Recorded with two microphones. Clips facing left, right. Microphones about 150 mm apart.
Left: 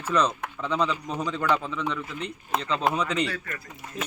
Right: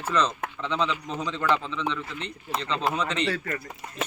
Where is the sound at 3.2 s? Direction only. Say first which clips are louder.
Right 4 dB; 30° right (ahead or behind).